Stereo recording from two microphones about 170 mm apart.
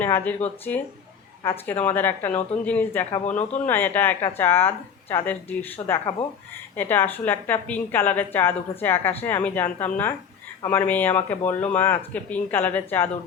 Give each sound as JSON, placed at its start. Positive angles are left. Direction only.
{"t": 0.0, "sound": "speech", "side_deg": 10}
{"t": 3.2, "sound": "speech", "side_deg": 45}
{"t": 3.7, "sound": "speech", "side_deg": 10}